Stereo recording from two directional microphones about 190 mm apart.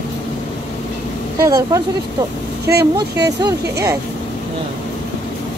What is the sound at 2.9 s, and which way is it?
Speech, 20° right (ahead or behind).